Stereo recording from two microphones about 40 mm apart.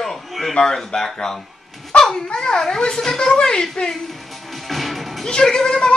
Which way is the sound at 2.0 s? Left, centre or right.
Centre.